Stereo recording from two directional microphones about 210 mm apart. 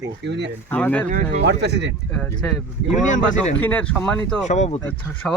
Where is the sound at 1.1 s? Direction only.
35° right (ahead or behind).